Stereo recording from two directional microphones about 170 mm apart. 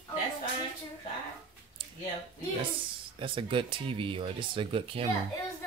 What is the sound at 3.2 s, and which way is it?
Speech, 30° right (ahead or behind).